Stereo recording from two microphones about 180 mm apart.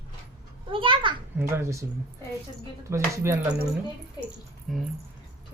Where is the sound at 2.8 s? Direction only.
15° right (ahead or behind).